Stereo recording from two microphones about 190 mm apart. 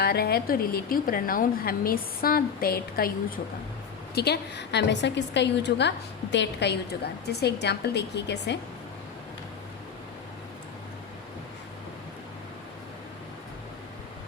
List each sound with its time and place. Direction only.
0.0 s a woman's voice: 55° left (ahead or behind)